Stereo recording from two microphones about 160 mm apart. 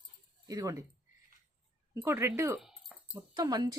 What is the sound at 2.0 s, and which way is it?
Speech, 15° right (ahead or behind).